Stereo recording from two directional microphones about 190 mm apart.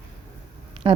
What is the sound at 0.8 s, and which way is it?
Speech, 25° right (ahead or behind).